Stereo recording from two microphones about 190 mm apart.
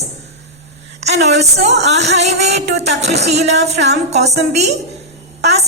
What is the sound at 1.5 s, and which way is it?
Speech, 60° right (ahead or behind).